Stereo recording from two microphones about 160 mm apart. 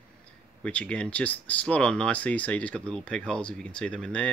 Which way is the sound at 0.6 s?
5° left (ahead or behind).